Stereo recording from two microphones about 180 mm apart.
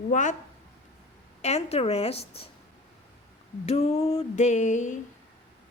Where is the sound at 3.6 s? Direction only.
35° left (ahead or behind).